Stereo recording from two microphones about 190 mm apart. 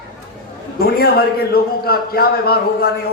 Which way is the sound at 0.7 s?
55° left (ahead or behind).